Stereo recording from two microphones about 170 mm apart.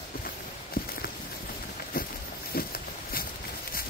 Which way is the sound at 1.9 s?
60° left (ahead or behind).